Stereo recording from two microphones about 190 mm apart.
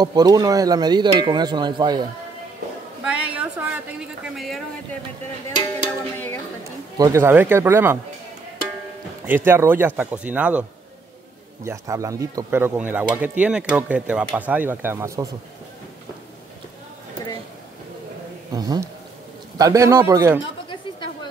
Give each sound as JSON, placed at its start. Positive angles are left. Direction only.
{"t": 0.0, "sound": "speech", "side_deg": -20}
{"t": 3.0, "sound": "a sound", "side_deg": -5}
{"t": 6.1, "sound": "a sound", "side_deg": 10}
{"t": 7.0, "sound": "speech", "side_deg": -15}
{"t": 9.2, "sound": "speech", "side_deg": -10}
{"t": 11.6, "sound": "speech", "side_deg": -15}
{"t": 18.5, "sound": "speech", "side_deg": -20}